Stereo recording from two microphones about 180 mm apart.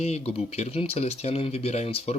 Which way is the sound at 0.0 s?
35° left (ahead or behind).